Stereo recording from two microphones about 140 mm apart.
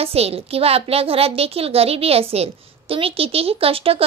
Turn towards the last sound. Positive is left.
turn(degrees=-40)  # may be behind; listen again after turning